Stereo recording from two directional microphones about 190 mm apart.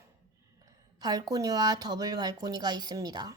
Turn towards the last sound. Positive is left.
turn(degrees=-20)  # may be behind; listen again after turning